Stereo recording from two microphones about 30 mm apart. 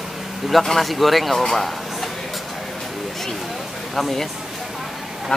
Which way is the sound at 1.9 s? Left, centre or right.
Centre.